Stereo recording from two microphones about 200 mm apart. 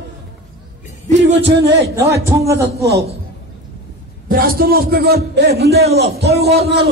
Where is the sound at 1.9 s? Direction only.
15° right (ahead or behind).